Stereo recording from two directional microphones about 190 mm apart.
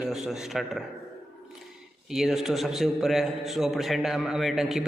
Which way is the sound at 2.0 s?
Centre (ahead or behind).